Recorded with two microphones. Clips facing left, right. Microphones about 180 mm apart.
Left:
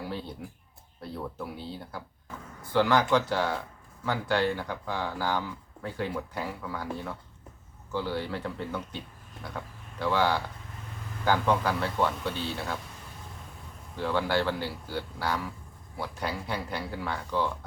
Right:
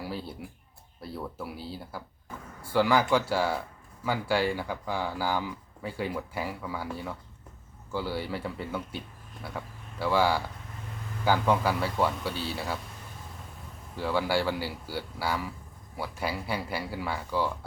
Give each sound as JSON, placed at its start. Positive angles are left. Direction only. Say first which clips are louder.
{"t": 0.0, "sound": "speech", "louder": "even", "side_deg": -5}
{"t": 1.0, "sound": "a sound", "louder": "even", "side_deg": -5}
{"t": 1.5, "sound": "speech", "louder": "even", "side_deg": -5}
{"t": 10.0, "sound": "speech", "louder": "right 1 dB", "side_deg": -10}
{"t": 13.9, "sound": "speech", "louder": "even", "side_deg": -10}